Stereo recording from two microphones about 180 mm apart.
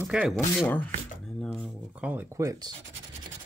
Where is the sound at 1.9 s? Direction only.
10° right (ahead or behind).